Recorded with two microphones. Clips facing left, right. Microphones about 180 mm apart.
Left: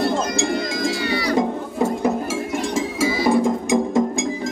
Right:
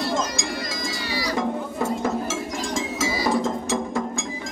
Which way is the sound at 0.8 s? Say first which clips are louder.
Left 6 dB; 60° left (ahead or behind).